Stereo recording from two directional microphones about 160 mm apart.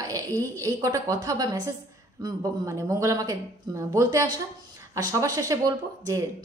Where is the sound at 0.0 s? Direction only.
20° right (ahead or behind).